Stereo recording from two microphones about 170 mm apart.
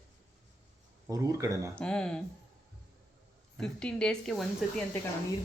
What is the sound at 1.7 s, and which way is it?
Speech, 5° left (ahead or behind).